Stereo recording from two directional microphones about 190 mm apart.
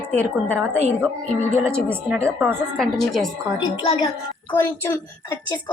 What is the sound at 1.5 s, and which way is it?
Speech, 10° right (ahead or behind).